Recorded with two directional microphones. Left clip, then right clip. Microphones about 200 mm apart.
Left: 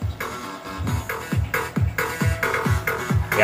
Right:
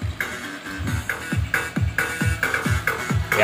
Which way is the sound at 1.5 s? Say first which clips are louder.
Right 1 dB; 55° left (ahead or behind).